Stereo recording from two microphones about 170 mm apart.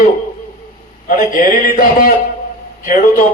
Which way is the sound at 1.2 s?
55° left (ahead or behind).